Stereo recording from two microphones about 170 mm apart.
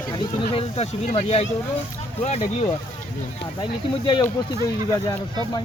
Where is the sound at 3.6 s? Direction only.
25° left (ahead or behind).